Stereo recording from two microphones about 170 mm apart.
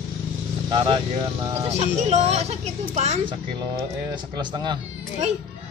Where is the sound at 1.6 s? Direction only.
40° right (ahead or behind).